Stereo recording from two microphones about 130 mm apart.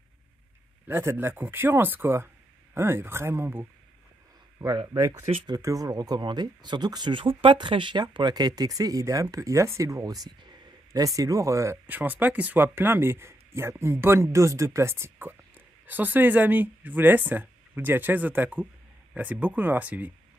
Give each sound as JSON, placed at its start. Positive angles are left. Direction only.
{"t": 0.8, "sound": "speech", "side_deg": -20}
{"t": 4.6, "sound": "speech", "side_deg": -30}
{"t": 5.1, "sound": "speech", "side_deg": -50}
{"t": 5.5, "sound": "speech", "side_deg": -25}